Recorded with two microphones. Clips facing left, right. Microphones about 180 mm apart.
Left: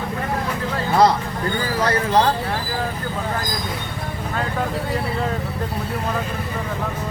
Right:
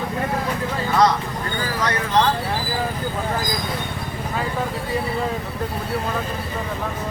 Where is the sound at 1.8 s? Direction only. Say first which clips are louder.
Left 2 dB; 30° left (ahead or behind).